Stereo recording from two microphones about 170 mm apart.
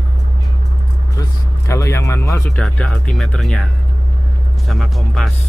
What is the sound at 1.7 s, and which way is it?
Speech, 15° left (ahead or behind).